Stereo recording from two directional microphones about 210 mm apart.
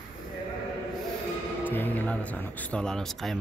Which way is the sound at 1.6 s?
10° left (ahead or behind).